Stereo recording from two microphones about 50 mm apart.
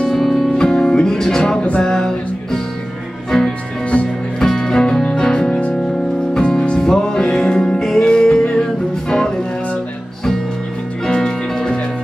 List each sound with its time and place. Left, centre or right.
0.0 s music: centre
0.6 s music: centre
11.1 s music: centre